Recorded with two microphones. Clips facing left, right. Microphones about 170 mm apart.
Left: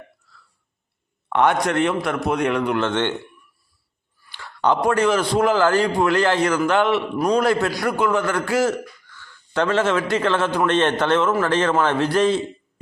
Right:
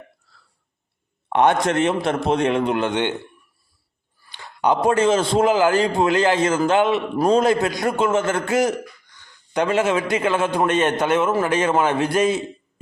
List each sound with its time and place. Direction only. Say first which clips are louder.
1.3 s a man's voice: right 1 dB; 20° right (ahead or behind)
4.3 s a man's voice: even; 20° right (ahead or behind)